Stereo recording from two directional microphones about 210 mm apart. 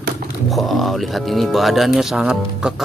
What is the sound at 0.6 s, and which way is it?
Speech, centre (ahead or behind).